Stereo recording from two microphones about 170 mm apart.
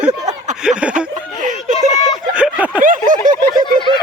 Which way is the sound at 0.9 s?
50° right (ahead or behind).